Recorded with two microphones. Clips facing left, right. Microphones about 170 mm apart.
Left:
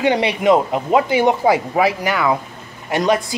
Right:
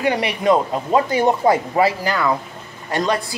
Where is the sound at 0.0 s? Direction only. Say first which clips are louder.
Left 3 dB; 20° left (ahead or behind).